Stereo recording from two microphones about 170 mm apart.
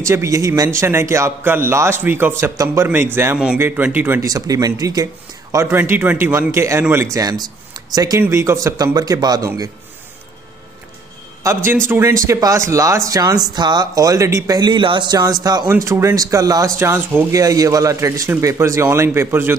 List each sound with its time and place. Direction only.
0.0 s speech: 15° right (ahead or behind)
11.4 s speech: 15° right (ahead or behind)